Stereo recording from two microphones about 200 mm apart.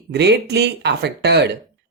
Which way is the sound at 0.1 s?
55° right (ahead or behind).